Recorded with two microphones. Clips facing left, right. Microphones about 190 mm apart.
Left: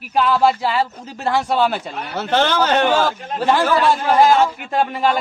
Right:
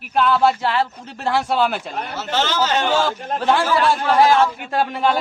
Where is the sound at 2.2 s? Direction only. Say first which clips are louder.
Left 4 dB; 60° left (ahead or behind).